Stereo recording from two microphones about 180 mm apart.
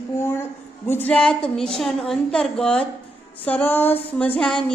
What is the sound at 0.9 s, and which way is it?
A woman's voice, 10° left (ahead or behind).